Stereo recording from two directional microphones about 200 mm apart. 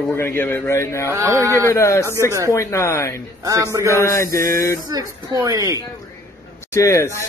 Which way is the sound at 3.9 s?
15° left (ahead or behind).